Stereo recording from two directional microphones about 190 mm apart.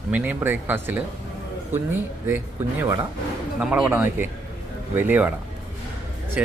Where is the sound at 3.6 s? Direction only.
5° right (ahead or behind).